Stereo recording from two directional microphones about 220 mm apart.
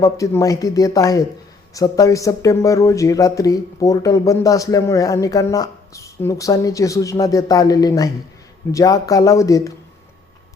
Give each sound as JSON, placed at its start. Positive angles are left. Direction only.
{"t": 0.0, "sound": "speech", "side_deg": 15}